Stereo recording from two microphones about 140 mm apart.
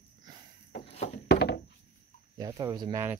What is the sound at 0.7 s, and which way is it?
Walk, 45° left (ahead or behind).